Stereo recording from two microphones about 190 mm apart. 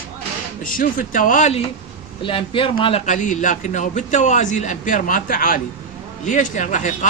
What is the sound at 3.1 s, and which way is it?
Speech, 40° left (ahead or behind).